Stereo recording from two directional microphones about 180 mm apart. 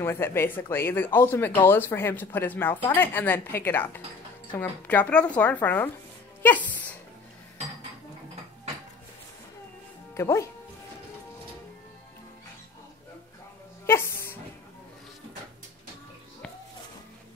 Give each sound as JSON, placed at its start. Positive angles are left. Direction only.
{"t": 0.0, "sound": "speech", "side_deg": 15}
{"t": 10.1, "sound": "speech", "side_deg": 15}
{"t": 13.8, "sound": "music", "side_deg": 15}